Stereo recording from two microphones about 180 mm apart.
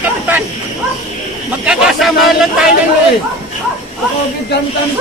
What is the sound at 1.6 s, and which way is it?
Speech, 5° right (ahead or behind).